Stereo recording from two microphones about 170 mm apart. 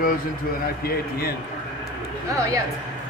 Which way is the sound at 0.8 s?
65° left (ahead or behind).